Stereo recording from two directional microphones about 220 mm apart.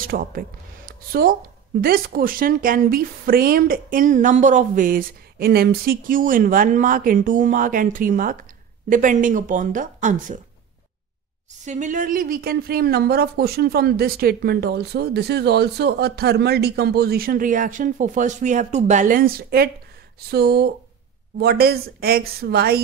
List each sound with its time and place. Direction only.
0.0 s speech: 40° right (ahead or behind)
11.6 s a woman's voice: 35° right (ahead or behind)